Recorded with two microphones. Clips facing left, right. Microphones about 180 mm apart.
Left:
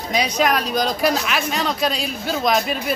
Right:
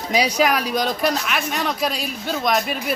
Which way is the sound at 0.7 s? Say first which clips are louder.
Left 1 dB; centre (ahead or behind).